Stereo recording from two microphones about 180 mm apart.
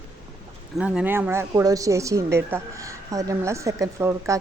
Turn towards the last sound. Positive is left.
turn(degrees=-15)  # may be behind; listen again after turning